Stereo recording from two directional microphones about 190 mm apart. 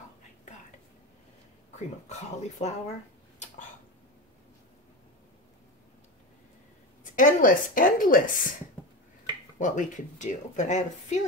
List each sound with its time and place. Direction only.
1.8 s speech: 35° left (ahead or behind)
7.2 s a woman's voice: 45° left (ahead or behind)
9.6 s speech: 40° left (ahead or behind)